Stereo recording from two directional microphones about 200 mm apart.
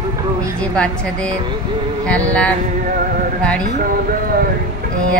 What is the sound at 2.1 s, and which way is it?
Music, 5° left (ahead or behind).